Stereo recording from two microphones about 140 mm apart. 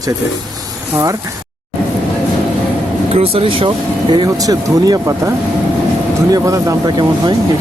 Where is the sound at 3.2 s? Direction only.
40° right (ahead or behind).